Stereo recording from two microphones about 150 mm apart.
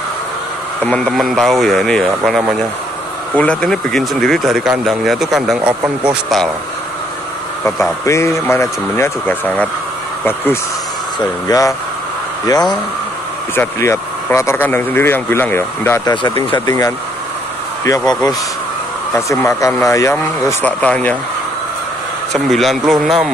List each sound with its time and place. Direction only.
0.8 s speech: 5° left (ahead or behind)
7.6 s speech: 20° left (ahead or behind)
16.1 s speech: 30° left (ahead or behind)
20.8 s speech: 10° left (ahead or behind)
22.3 s speech: centre (ahead or behind)